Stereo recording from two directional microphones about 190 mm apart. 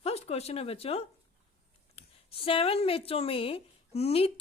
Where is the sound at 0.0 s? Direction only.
35° left (ahead or behind).